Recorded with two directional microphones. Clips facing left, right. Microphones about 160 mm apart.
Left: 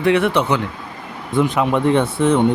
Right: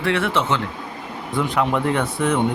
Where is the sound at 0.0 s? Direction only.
15° left (ahead or behind).